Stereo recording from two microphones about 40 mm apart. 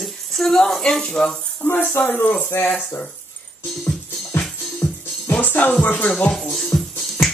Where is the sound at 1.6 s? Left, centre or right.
Left.